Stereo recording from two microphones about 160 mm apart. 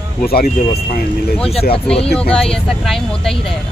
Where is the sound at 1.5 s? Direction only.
40° left (ahead or behind).